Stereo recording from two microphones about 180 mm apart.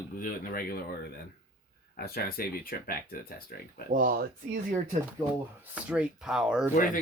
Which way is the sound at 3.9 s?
50° right (ahead or behind).